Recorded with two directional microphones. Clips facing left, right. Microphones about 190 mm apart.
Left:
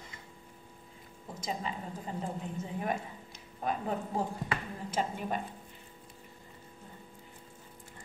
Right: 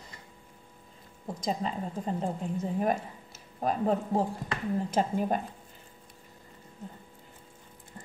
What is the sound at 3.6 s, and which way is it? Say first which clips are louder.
A woman's voice: right 6 dB; 40° right (ahead or behind).